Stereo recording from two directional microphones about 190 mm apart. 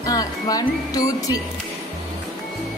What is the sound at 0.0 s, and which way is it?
Speech, 20° left (ahead or behind).